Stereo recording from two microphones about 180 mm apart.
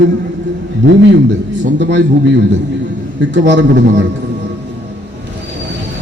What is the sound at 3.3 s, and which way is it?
Speech, 80° right.